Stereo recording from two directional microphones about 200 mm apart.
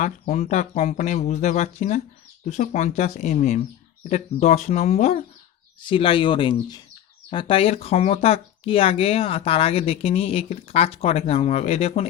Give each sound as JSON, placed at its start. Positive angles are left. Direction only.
{"t": 0.0, "sound": "speech", "side_deg": 35}